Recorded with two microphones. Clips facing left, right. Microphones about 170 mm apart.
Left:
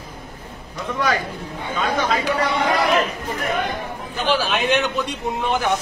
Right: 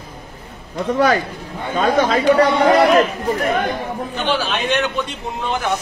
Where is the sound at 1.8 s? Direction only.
45° right (ahead or behind).